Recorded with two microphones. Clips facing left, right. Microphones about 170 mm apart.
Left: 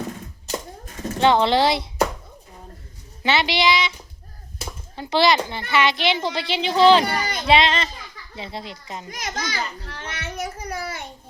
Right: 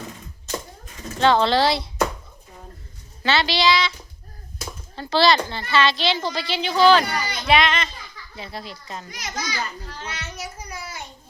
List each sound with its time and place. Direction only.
1.2 s speech: 20° left (ahead or behind)
3.2 s speech: 20° left (ahead or behind)
4.5 s a sound: 5° left (ahead or behind)
5.0 s speech: 20° left (ahead or behind)
9.0 s a child's voice: 50° left (ahead or behind)